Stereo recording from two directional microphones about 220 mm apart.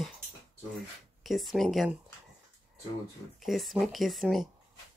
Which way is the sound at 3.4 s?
Centre (ahead or behind).